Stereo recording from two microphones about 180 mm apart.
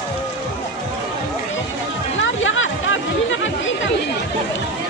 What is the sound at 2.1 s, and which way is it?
Music, 90° left.